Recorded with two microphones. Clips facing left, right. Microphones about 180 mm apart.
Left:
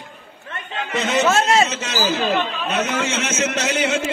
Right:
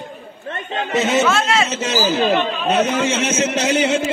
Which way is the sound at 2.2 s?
30° right (ahead or behind).